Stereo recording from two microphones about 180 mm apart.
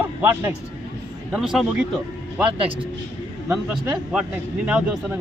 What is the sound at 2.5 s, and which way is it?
Speech, 30° right (ahead or behind).